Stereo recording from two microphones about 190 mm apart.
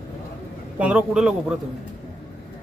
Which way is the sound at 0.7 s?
5° right (ahead or behind).